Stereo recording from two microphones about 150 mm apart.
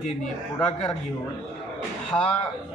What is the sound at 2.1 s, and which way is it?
Speech, 15° left (ahead or behind).